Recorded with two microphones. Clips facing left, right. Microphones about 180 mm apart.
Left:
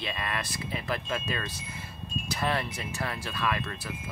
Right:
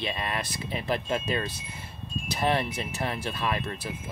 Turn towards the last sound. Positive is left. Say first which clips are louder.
# right 1 dB
turn(degrees=-25)  # may be behind; listen again after turning